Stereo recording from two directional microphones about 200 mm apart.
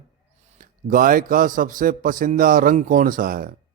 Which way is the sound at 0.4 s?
45° right (ahead or behind).